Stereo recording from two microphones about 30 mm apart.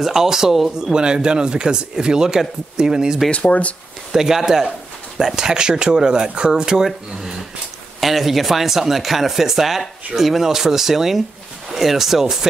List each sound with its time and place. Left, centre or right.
0.0 s speech: centre
0.9 s speech: right
4.1 s speech: centre; by 6.8 s right
6.8 s speech: centre
8.0 s speech: centre